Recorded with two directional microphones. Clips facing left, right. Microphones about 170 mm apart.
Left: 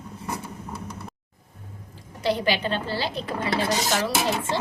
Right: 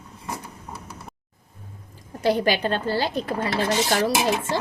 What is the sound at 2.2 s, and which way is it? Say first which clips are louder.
Speech: right 3 dB; 45° right (ahead or behind).